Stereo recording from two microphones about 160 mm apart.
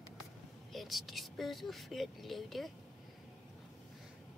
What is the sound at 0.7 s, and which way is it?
Speech, centre (ahead or behind).